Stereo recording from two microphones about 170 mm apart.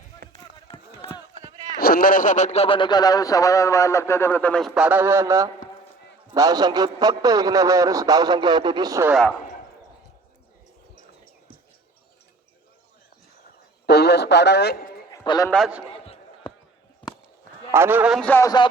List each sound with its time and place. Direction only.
0.2 s music: 70° right (ahead or behind)
0.7 s a sound: 35° left (ahead or behind)
1.8 s a man's voice: 60° left (ahead or behind); by 9.1 s 20° right (ahead or behind)
13.8 s a man's voice: 75° left (ahead or behind)
15.1 s a sound: 25° left (ahead or behind)
15.4 s a man's voice: centre (ahead or behind)
17.7 s a man's voice: 15° right (ahead or behind)
18.2 s speech: 10° left (ahead or behind)
18.4 s a man's voice: 25° left (ahead or behind)